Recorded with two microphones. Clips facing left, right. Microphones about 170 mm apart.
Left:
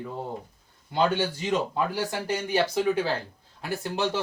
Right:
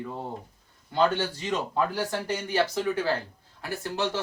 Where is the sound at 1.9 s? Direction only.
10° left (ahead or behind).